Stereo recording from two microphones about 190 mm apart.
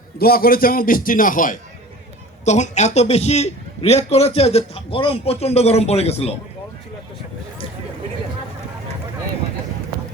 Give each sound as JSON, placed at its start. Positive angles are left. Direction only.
{"t": 0.2, "sound": "a man's voice", "side_deg": 50}